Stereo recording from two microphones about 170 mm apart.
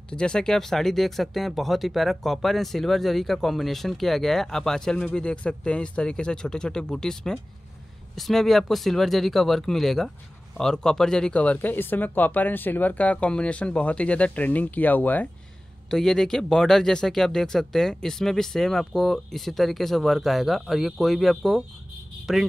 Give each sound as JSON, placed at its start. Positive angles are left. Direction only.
{"t": 0.1, "sound": "speech", "side_deg": 5}